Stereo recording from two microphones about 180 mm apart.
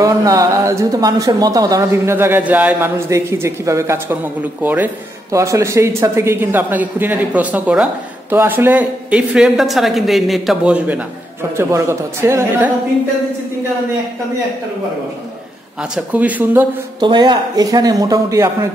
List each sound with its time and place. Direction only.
0.0 s speech: 20° right (ahead or behind)
15.8 s speech: 5° right (ahead or behind)
17.0 s speech: 25° right (ahead or behind)